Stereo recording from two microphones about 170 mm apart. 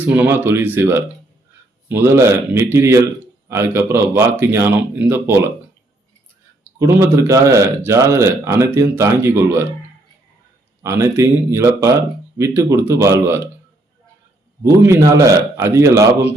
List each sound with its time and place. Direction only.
0.0 s a man's voice: 10° right (ahead or behind)
6.7 s a man's voice: 15° right (ahead or behind)
10.8 s a man's voice: 15° right (ahead or behind)
14.6 s a man's voice: 20° right (ahead or behind)